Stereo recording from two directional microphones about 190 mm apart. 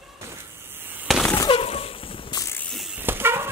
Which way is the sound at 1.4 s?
30° left (ahead or behind).